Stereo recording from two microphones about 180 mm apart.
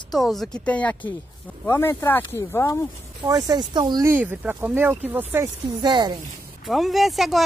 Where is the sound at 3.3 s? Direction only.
20° right (ahead or behind).